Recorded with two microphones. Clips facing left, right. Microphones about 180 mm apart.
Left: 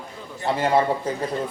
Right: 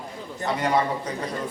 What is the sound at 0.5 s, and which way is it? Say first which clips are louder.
Speech: left 3 dB; 30° left (ahead or behind).